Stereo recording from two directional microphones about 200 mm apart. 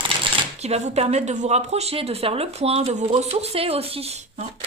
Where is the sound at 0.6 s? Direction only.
30° right (ahead or behind).